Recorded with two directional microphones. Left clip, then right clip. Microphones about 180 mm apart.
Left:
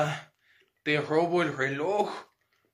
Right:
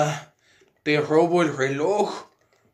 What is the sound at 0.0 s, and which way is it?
A man's voice, centre (ahead or behind).